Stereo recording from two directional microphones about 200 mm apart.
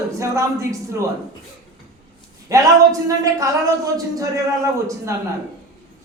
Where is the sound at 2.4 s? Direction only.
15° right (ahead or behind).